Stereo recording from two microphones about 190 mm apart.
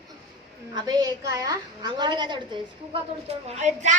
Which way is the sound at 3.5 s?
35° right (ahead or behind).